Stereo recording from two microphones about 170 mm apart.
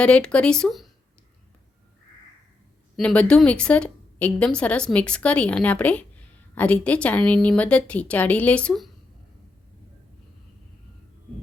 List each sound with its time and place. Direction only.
0.0 s speech: 5° left (ahead or behind)
2.9 s a woman's voice: 5° left (ahead or behind)